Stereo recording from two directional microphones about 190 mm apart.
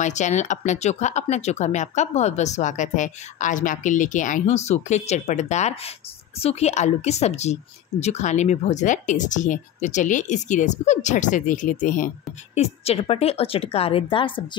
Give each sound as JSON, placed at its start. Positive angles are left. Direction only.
{"t": 0.0, "sound": "speech", "side_deg": 40}